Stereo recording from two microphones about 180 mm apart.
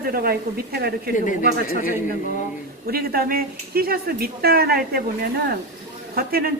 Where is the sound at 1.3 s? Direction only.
45° left (ahead or behind).